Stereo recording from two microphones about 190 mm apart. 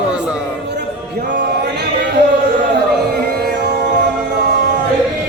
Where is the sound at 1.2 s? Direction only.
60° right (ahead or behind).